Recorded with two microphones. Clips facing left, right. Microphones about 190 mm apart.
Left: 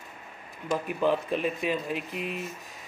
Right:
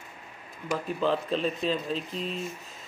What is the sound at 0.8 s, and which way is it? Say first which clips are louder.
Speech: left 1 dB; 15° left (ahead or behind).